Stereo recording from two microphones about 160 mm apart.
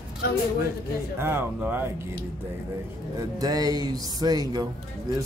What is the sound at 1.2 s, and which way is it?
Speech, 15° right (ahead or behind).